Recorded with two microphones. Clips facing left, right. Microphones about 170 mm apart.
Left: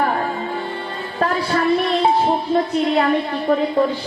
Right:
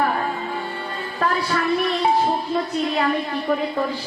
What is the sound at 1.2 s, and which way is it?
Music, 35° left (ahead or behind).